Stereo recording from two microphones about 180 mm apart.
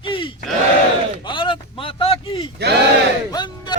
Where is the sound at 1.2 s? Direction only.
25° left (ahead or behind).